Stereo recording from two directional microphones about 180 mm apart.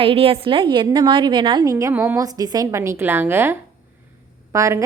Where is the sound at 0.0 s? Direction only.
30° right (ahead or behind).